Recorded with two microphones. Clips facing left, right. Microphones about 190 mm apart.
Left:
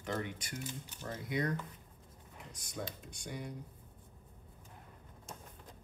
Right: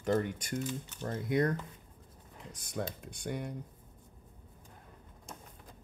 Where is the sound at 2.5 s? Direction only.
55° right (ahead or behind).